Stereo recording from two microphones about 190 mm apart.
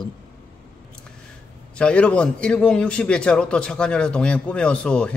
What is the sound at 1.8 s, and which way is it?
A man's voice, 5° left (ahead or behind).